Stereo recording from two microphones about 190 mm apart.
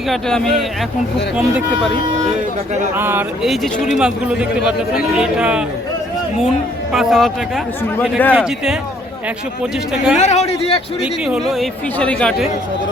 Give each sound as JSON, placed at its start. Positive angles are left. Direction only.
{"t": 0.1, "sound": "a man's voice", "side_deg": 0}
{"t": 2.9, "sound": "a man's voice", "side_deg": -10}
{"t": 6.9, "sound": "a man's voice", "side_deg": 0}
{"t": 10.2, "sound": "speech", "side_deg": 35}
{"t": 11.0, "sound": "a man's voice", "side_deg": 0}